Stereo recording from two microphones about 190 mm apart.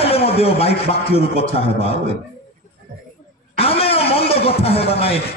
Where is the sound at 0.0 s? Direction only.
30° left (ahead or behind).